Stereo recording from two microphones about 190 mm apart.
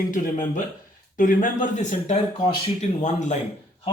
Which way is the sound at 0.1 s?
40° left (ahead or behind).